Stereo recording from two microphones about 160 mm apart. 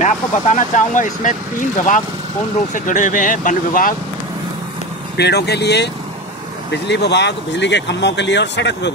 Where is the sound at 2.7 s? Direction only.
55° left (ahead or behind).